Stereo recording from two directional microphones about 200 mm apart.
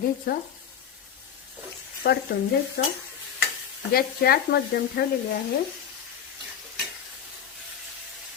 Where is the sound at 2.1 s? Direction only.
55° left (ahead or behind).